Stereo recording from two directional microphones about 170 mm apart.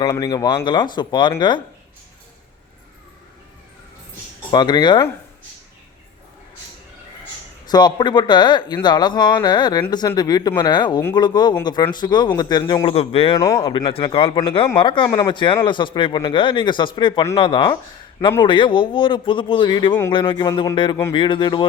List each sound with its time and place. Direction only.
0.0 s speech: 20° left (ahead or behind)
4.5 s speech: 25° left (ahead or behind)
7.7 s a man's voice: 25° left (ahead or behind)
13.3 s speech: 20° left (ahead or behind)
13.7 s a man's voice: 30° left (ahead or behind)